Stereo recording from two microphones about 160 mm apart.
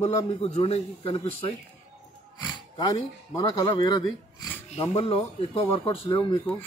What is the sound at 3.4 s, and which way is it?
Speech, 30° left (ahead or behind).